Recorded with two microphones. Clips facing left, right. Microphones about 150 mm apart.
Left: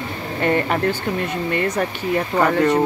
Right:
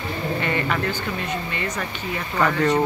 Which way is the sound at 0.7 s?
50° left (ahead or behind).